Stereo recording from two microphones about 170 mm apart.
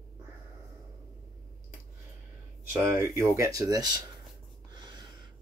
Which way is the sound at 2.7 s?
15° right (ahead or behind).